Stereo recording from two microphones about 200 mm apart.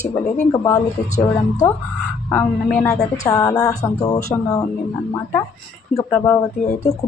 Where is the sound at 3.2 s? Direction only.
20° left (ahead or behind).